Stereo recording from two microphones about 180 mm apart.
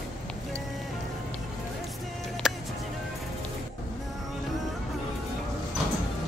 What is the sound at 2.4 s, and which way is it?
Music, centre (ahead or behind).